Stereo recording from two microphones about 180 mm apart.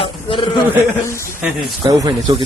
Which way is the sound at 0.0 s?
30° left (ahead or behind).